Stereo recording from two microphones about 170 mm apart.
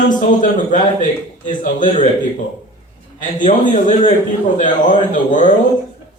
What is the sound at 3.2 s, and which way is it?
A man's voice, 50° left (ahead or behind).